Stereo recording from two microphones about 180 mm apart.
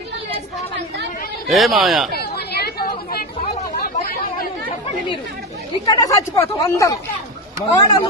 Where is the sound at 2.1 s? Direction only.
60° left (ahead or behind).